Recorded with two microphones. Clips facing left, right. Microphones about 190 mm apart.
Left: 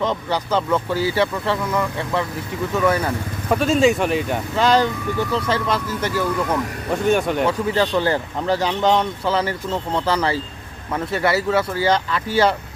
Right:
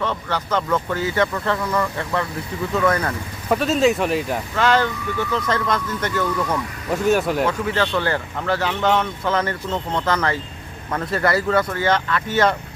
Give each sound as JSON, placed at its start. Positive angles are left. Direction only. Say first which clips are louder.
{"t": 0.0, "sound": "speech", "louder": "left 3 dB", "side_deg": 15}
{"t": 0.9, "sound": "speech", "louder": "left 2 dB", "side_deg": 30}
{"t": 1.5, "sound": "speech", "louder": "even", "side_deg": 15}
{"t": 4.5, "sound": "speech", "louder": "left 2 dB", "side_deg": 15}
{"t": 6.9, "sound": "speech", "louder": "even", "side_deg": -5}
{"t": 7.4, "sound": "speech", "louder": "left 2 dB", "side_deg": 15}